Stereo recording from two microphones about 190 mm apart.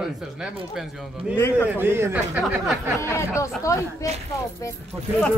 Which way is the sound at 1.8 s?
10° right (ahead or behind).